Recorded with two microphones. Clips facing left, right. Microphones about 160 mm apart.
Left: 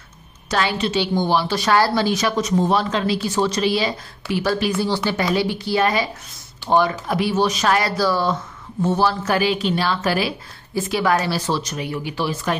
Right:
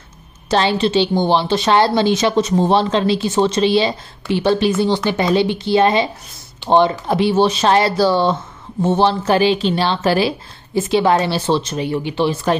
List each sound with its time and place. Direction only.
0.5 s a woman's voice: 30° right (ahead or behind)